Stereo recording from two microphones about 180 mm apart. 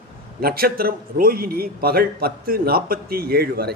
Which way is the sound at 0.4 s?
55° right (ahead or behind).